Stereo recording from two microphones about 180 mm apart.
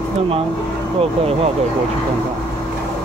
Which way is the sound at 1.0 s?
35° right (ahead or behind).